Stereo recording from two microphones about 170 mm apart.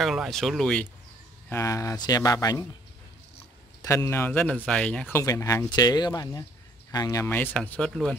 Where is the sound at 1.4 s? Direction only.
15° left (ahead or behind).